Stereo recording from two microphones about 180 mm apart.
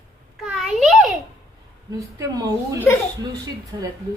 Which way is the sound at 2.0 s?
20° right (ahead or behind).